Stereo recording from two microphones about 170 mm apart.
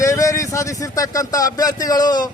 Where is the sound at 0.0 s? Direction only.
20° left (ahead or behind).